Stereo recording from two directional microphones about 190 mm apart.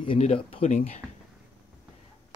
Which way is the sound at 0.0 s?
30° left (ahead or behind).